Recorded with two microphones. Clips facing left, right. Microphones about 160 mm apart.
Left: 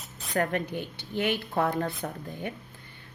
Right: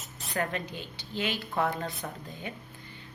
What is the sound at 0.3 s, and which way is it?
A woman's voice, 55° left (ahead or behind).